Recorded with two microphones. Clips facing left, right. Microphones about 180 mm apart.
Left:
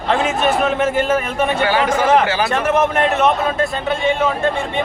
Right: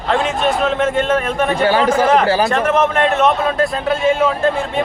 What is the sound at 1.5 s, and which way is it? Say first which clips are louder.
Speech: right 4 dB; 35° right (ahead or behind).